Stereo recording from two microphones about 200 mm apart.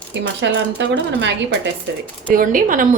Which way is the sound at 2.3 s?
45° right (ahead or behind).